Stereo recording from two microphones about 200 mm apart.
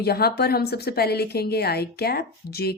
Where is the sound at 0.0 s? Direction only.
50° left (ahead or behind).